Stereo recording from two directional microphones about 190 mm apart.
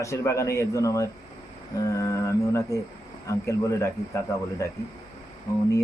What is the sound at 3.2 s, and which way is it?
Speech, 15° left (ahead or behind).